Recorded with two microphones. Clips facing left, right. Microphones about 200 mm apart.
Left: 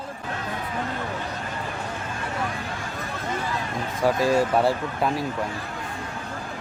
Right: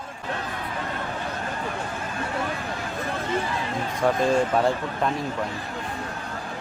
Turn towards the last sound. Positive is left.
turn(degrees=5)  # may be behind; listen again after turning